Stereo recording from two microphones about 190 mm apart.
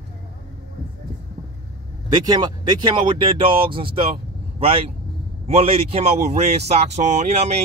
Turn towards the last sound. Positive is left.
turn(degrees=-35)  # may be behind; listen again after turning